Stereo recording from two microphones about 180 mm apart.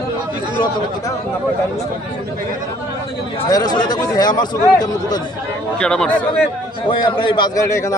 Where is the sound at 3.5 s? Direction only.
20° left (ahead or behind).